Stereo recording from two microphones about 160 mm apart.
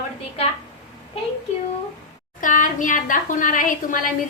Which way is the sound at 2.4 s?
55° left (ahead or behind).